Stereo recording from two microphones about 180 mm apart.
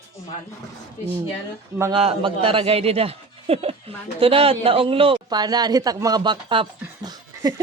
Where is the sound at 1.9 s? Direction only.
30° right (ahead or behind).